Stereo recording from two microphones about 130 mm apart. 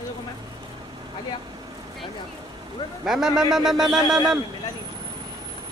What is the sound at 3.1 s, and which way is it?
A man's voice, 5° right (ahead or behind).